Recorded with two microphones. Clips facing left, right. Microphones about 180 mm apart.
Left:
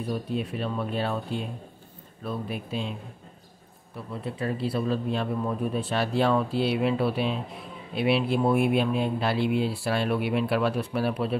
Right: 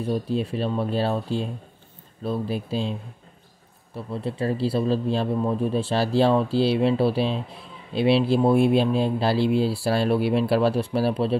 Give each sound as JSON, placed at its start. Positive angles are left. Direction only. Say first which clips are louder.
{"t": 0.1, "sound": "speech", "louder": "right 5 dB", "side_deg": -30}